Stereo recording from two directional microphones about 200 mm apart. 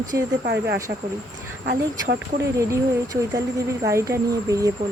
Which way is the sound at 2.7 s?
15° right (ahead or behind).